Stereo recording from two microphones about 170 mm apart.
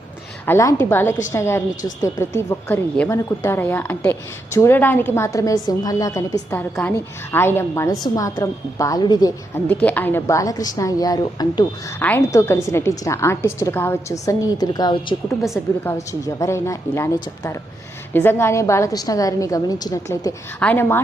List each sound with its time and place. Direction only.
0.4 s a woman's voice: 15° left (ahead or behind)
9.6 s a woman's voice: 10° left (ahead or behind)
11.9 s a woman's voice: 10° left (ahead or behind)
15.4 s a woman's voice: centre (ahead or behind)
16.2 s a woman's voice: 20° left (ahead or behind)
20.6 s a woman's voice: 10° left (ahead or behind)